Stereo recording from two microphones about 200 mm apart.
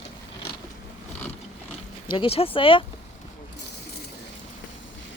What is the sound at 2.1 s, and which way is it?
Speech, 25° left (ahead or behind).